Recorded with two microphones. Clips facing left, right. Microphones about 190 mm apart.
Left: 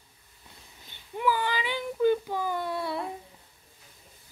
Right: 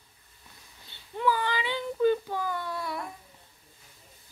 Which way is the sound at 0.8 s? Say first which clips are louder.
Even; 15° left (ahead or behind).